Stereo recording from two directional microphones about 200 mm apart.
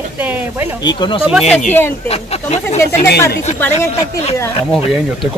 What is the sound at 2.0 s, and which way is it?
Speech, 30° left (ahead or behind).